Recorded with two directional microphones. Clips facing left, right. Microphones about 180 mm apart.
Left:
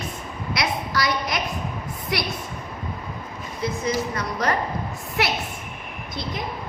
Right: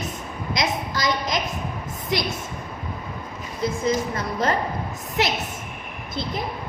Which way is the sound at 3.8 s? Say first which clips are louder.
Right 2 dB; 25° right (ahead or behind).